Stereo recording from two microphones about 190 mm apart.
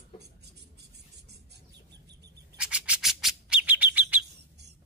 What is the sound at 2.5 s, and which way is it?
Bird, 5° right (ahead or behind).